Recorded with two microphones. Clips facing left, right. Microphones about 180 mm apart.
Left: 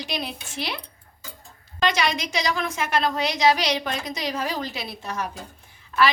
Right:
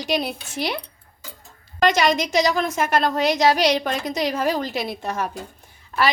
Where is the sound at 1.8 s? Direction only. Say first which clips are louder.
Right 5 dB; 45° right (ahead or behind).